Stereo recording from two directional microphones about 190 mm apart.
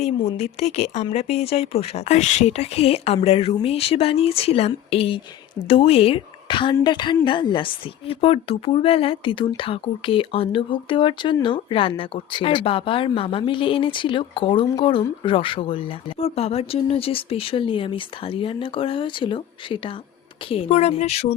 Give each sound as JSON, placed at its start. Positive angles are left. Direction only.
{"t": 0.0, "sound": "a woman's voice", "side_deg": 35}